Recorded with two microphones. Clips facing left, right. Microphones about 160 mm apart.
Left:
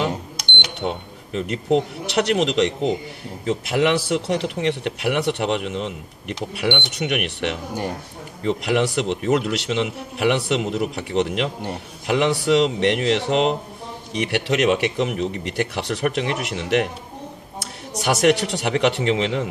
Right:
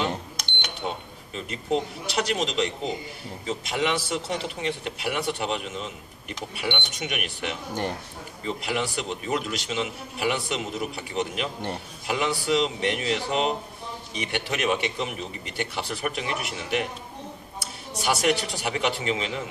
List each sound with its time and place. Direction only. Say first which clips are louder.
0.7 s a man's voice: left 6 dB; 70° left (ahead or behind)
17.9 s a man's voice: left 6 dB; 75° left (ahead or behind)